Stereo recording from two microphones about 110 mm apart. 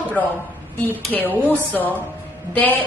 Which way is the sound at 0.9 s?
15° left (ahead or behind).